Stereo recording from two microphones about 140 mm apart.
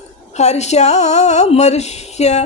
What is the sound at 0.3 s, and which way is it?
Speech, 55° left (ahead or behind).